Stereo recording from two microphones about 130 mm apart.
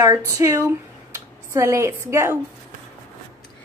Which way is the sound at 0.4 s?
25° right (ahead or behind).